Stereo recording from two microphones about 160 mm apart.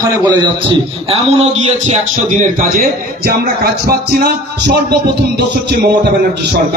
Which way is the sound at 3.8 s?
80° right.